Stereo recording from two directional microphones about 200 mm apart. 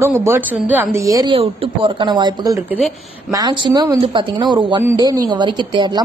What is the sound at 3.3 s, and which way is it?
Speech, 20° right (ahead or behind).